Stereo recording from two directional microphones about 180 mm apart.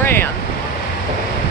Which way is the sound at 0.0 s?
10° left (ahead or behind).